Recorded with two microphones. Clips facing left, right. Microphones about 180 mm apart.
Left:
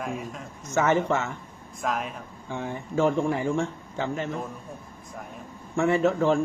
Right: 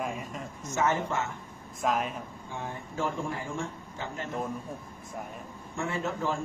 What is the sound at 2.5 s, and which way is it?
Speech, 75° left (ahead or behind).